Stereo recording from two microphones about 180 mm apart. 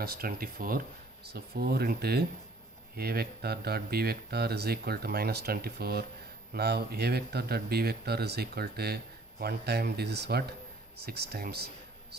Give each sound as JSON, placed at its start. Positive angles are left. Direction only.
{"t": 0.0, "sound": "speech", "side_deg": -55}